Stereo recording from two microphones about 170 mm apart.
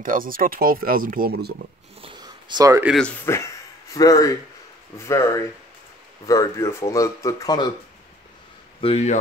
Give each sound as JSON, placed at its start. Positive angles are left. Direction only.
{"t": 0.0, "sound": "speech", "side_deg": -55}
{"t": 2.0, "sound": "speech", "side_deg": -30}
{"t": 3.0, "sound": "speech", "side_deg": 10}
{"t": 8.8, "sound": "speech", "side_deg": 40}